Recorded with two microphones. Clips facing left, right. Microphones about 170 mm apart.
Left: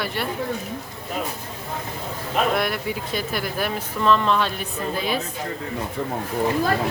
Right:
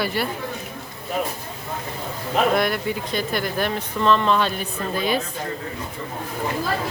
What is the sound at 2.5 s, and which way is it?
Speech, centre (ahead or behind).